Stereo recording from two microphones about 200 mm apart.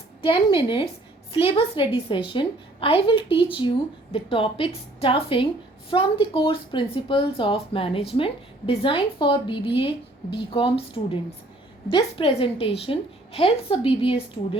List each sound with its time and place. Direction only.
0.2 s a woman's voice: 25° left (ahead or behind)